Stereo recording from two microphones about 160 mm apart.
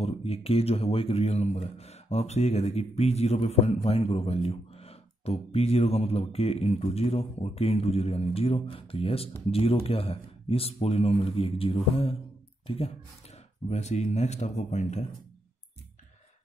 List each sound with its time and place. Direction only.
0.0 s speech: 40° left (ahead or behind)